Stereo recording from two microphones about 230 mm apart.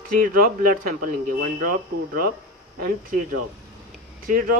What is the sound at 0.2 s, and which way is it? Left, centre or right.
Speech, right.